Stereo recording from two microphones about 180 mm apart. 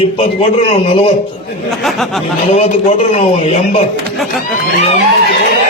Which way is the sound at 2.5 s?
35° left (ahead or behind).